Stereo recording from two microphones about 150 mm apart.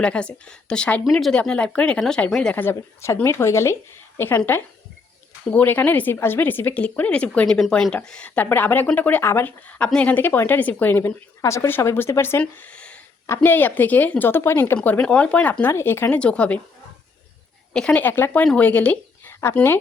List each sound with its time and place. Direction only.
0.0 s speech: 5° left (ahead or behind)
17.7 s speech: 10° left (ahead or behind)